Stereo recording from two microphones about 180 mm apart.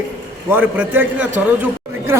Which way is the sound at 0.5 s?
10° right (ahead or behind).